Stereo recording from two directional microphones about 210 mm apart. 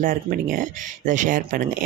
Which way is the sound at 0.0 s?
40° right (ahead or behind).